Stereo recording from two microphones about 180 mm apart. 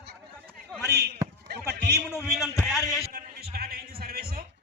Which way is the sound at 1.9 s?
15° left (ahead or behind).